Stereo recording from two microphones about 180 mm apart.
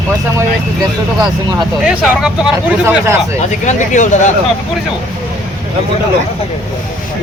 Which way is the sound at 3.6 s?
45° left (ahead or behind).